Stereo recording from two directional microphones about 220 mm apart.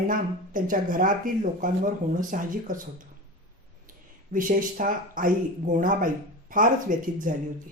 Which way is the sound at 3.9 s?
40° right (ahead or behind).